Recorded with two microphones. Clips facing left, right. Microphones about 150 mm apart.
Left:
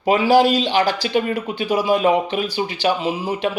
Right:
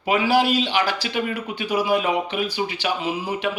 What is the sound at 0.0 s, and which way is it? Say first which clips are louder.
A man's voice: left 5 dB; 35° left (ahead or behind).